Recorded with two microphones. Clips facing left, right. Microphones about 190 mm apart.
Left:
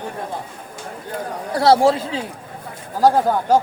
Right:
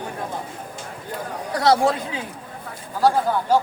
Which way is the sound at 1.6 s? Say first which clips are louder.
Left 4 dB; 30° left (ahead or behind).